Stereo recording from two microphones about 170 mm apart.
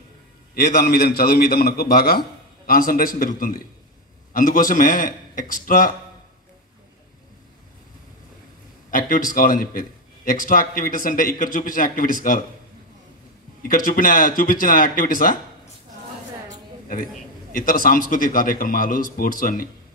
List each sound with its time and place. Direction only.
0.6 s a man's voice: 65° left (ahead or behind)
8.9 s a man's voice: 55° left (ahead or behind)
13.6 s a man's voice: 55° left (ahead or behind)
17.5 s a man's voice: 55° left (ahead or behind)